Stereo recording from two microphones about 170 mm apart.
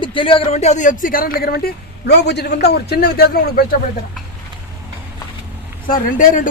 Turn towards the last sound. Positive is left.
turn(degrees=50)  # may be behind; listen again after turning